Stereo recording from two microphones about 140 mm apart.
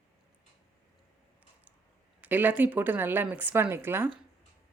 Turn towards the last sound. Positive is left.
turn(degrees=-15)  # may be behind; listen again after turning